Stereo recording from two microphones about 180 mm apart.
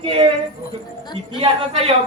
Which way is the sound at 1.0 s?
25° left (ahead or behind).